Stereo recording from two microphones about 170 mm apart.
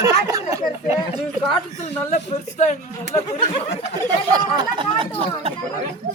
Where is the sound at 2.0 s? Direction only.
45° left (ahead or behind).